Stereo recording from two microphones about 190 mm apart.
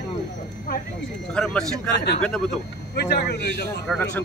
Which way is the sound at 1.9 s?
65° left (ahead or behind).